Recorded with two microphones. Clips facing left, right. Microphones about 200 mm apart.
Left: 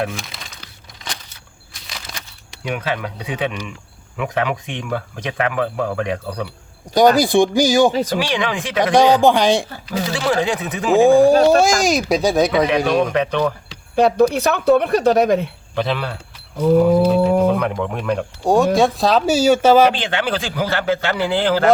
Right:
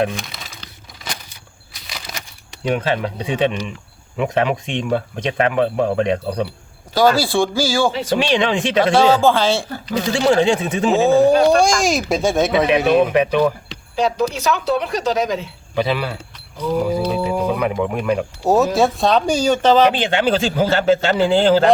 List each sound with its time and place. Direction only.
0.2 s crumpling: centre (ahead or behind)
1.0 s a sound: 5° right (ahead or behind)
2.6 s speech: 30° right (ahead or behind)
6.9 s speech: 20° left (ahead or behind)
8.2 s speech: 25° right (ahead or behind)
8.8 s speech: 15° left (ahead or behind)
10.1 s speech: 25° right (ahead or behind)
10.9 s speech: 15° left (ahead or behind); by 13.5 s 10° right (ahead or behind)
13.9 s speech: 55° left (ahead or behind)
15.7 s speech: 5° right (ahead or behind)
16.6 s speech: 55° left (ahead or behind)
17.5 s speech: 5° right (ahead or behind)
19.9 s speech: 20° right (ahead or behind)